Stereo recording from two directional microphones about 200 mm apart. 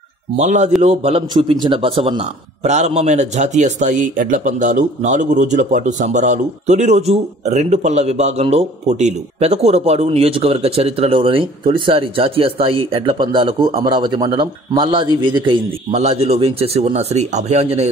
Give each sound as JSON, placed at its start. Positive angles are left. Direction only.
{"t": 0.4, "sound": "speech", "side_deg": -35}